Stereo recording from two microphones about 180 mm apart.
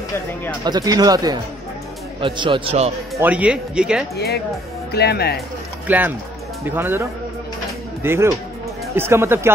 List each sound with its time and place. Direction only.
0.7 s speech: 20° right (ahead or behind)
3.2 s speech: 10° right (ahead or behind)
4.9 s speech: 60° left (ahead or behind)
5.9 s speech: 10° right (ahead or behind)